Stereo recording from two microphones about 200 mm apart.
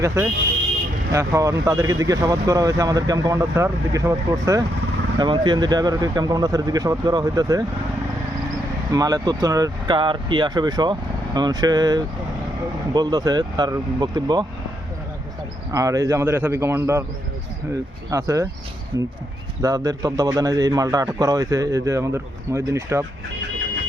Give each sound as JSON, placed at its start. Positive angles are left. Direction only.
{"t": 0.0, "sound": "speech", "side_deg": -15}
{"t": 8.9, "sound": "speech", "side_deg": -20}
{"t": 15.7, "sound": "speech", "side_deg": -15}
{"t": 18.1, "sound": "speech", "side_deg": -15}